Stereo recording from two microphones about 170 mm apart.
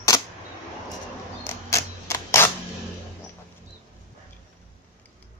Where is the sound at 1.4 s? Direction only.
15° left (ahead or behind).